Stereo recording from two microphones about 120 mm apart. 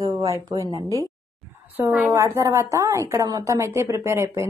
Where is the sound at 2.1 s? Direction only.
25° right (ahead or behind).